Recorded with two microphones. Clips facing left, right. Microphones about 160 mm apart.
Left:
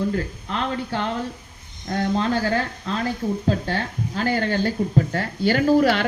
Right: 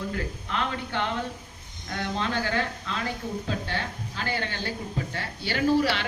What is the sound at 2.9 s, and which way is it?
Speech, 40° left (ahead or behind).